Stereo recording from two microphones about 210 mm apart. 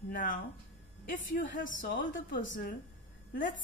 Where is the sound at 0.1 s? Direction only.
40° left (ahead or behind).